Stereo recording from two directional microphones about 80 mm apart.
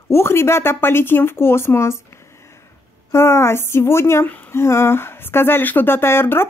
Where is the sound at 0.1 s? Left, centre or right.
Left.